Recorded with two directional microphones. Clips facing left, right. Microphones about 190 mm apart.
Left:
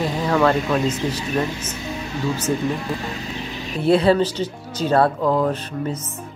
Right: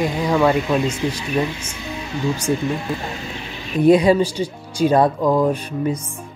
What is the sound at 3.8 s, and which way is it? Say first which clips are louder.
Speech: right 3 dB; 15° right (ahead or behind).